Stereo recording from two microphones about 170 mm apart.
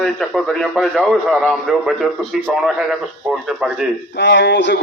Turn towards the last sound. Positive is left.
turn(degrees=90)